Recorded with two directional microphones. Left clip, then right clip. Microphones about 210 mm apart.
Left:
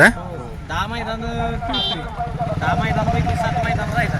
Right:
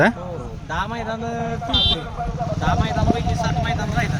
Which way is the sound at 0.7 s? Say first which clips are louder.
Left 1 dB; 25° left (ahead or behind).